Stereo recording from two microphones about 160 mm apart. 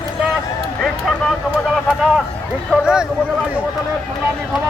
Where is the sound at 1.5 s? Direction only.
5° right (ahead or behind).